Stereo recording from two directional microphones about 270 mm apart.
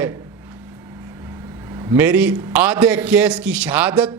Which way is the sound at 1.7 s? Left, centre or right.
Centre.